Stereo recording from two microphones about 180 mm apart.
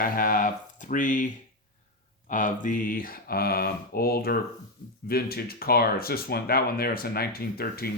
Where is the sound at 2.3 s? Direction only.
45° left (ahead or behind).